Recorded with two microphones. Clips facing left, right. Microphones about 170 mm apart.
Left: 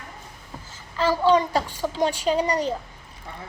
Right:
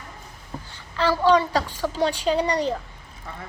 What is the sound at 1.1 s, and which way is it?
Speech, 15° left (ahead or behind).